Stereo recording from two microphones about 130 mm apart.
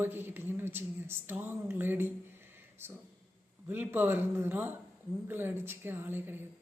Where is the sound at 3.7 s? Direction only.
15° right (ahead or behind).